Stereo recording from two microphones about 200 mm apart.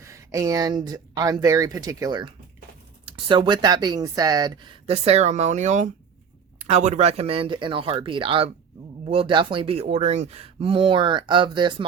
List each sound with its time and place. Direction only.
0.0 s speech: 15° right (ahead or behind)